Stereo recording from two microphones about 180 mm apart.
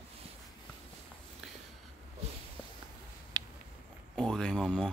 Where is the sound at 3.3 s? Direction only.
20° right (ahead or behind).